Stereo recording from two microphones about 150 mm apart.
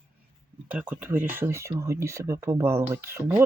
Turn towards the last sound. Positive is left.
turn(degrees=-15)  # may be behind; listen again after turning